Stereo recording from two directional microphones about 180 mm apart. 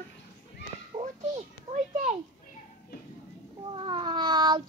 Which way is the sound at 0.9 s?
35° right (ahead or behind).